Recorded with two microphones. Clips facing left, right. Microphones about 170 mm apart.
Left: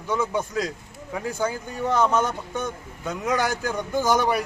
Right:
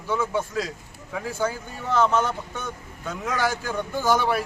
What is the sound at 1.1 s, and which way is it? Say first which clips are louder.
Speech: left 2 dB; 5° left (ahead or behind).